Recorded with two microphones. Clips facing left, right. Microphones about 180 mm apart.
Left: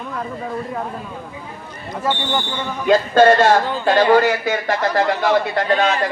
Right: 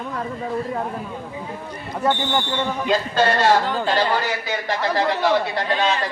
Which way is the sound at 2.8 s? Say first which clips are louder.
Left 9 dB; 50° left (ahead or behind).